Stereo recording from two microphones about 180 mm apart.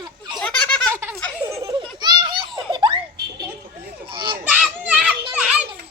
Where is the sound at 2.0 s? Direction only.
25° right (ahead or behind).